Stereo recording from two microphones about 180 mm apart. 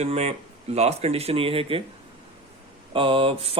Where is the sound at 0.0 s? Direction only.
35° right (ahead or behind).